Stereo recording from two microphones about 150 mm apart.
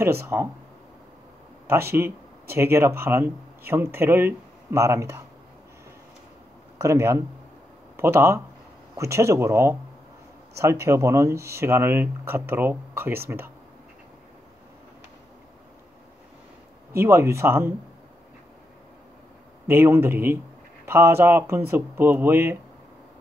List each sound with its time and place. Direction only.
0.0 s speech: 15° right (ahead or behind)
1.7 s speech: 15° right (ahead or behind)
6.8 s speech: 20° right (ahead or behind)
16.9 s speech: 20° right (ahead or behind)
19.7 s speech: 15° right (ahead or behind)